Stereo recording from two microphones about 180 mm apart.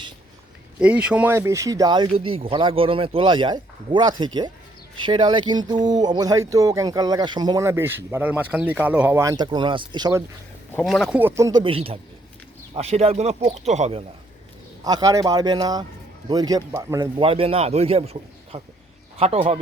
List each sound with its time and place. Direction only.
0.8 s speech: 5° right (ahead or behind)
10.8 s speech: centre (ahead or behind)
11.2 s speech: 15° right (ahead or behind)
11.6 s a man's voice: 30° right (ahead or behind)
14.8 s speech: 20° right (ahead or behind)
17.2 s a man's voice: 30° right (ahead or behind)